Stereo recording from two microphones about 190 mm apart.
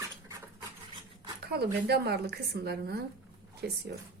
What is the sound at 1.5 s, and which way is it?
Speech, 60° right (ahead or behind).